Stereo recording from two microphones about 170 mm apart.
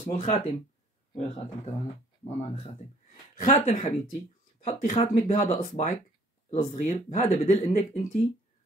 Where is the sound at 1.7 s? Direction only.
40° left (ahead or behind).